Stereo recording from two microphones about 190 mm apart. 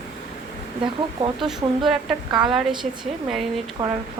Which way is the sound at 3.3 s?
Centre (ahead or behind).